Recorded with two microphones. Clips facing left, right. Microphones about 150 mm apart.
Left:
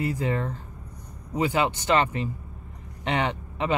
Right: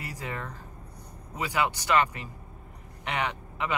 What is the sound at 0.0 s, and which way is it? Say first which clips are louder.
Speech: left 10 dB; 25° left (ahead or behind).